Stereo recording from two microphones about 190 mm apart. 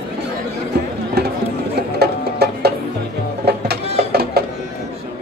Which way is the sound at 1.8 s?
60° right (ahead or behind).